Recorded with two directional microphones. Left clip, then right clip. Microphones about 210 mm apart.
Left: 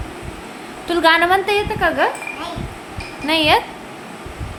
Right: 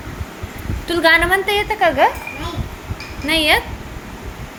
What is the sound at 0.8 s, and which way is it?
A woman's voice, 10° left (ahead or behind).